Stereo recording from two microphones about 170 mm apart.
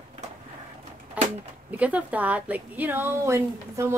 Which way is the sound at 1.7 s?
10° right (ahead or behind).